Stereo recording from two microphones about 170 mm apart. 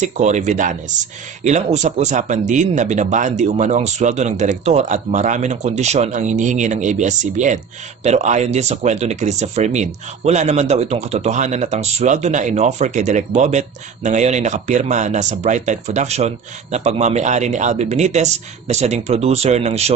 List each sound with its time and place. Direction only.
0.0 s speech: 45° right (ahead or behind)